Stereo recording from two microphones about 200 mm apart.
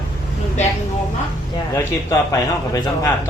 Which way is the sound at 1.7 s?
15° left (ahead or behind).